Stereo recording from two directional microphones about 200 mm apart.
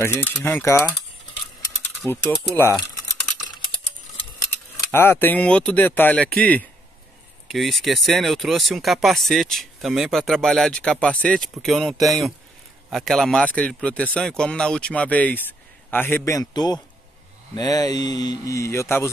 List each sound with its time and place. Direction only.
0.0 s speech: 10° left (ahead or behind)
2.0 s speech: 10° left (ahead or behind)
2.5 s typing: 10° left (ahead or behind)
4.9 s speech: 10° left (ahead or behind)